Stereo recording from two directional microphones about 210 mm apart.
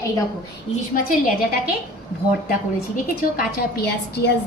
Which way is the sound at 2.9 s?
45° left (ahead or behind).